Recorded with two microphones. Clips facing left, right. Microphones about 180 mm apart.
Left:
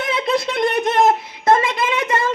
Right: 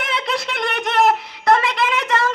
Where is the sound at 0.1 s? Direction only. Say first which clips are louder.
Left 6 dB; 25° left (ahead or behind).